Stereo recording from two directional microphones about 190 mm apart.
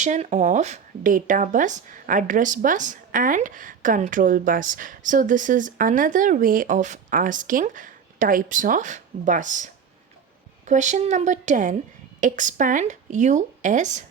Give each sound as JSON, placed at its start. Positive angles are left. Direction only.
{"t": 0.0, "sound": "speech", "side_deg": -40}
{"t": 10.7, "sound": "a woman's voice", "side_deg": -40}